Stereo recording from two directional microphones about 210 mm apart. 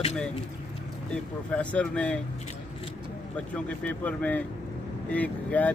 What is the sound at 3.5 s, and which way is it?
Speech, 5° left (ahead or behind).